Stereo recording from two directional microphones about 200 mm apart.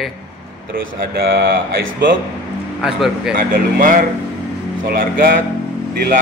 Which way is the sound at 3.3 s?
45° right (ahead or behind).